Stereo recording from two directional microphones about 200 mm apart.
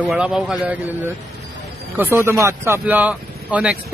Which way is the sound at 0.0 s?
5° right (ahead or behind).